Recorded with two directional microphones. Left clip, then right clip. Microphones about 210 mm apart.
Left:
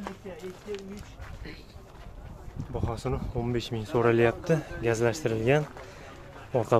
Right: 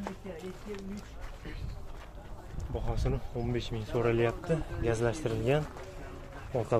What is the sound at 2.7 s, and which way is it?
Speech, 20° left (ahead or behind).